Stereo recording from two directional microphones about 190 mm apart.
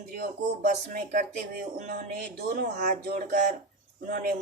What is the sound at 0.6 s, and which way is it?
Speech, 40° right (ahead or behind).